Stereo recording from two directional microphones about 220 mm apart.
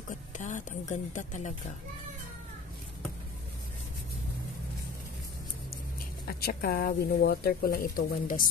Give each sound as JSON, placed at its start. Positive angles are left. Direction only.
{"t": 0.4, "sound": "speech", "side_deg": 35}
{"t": 6.2, "sound": "speech", "side_deg": 45}